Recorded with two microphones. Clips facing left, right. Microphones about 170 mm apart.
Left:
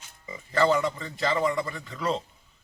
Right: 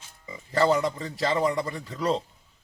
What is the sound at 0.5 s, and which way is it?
A man's voice, 35° right (ahead or behind).